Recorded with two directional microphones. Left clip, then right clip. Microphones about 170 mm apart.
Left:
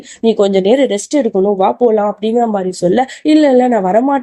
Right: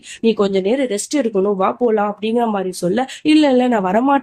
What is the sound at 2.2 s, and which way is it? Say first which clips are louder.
Speech: left 4 dB; 10° left (ahead or behind).